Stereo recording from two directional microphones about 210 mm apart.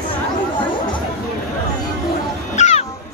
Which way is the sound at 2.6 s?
35° left (ahead or behind).